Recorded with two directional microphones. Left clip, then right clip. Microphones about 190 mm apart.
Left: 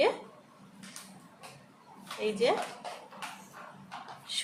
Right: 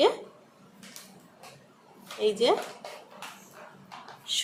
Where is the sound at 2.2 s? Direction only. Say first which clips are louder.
Right 4 dB; 30° right (ahead or behind).